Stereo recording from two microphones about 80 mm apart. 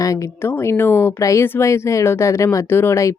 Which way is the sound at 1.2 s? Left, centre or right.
Left.